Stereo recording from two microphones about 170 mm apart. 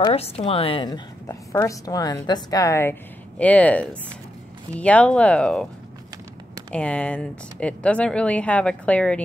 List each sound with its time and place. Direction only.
0.1 s a woman's voice: 35° left (ahead or behind); by 5.7 s 5° left (ahead or behind)
6.7 s speech: 5° left (ahead or behind)